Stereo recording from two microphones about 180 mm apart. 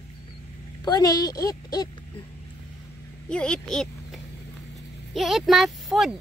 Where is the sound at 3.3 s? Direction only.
5° left (ahead or behind).